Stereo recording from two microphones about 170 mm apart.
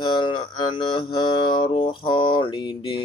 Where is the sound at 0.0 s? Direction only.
30° left (ahead or behind).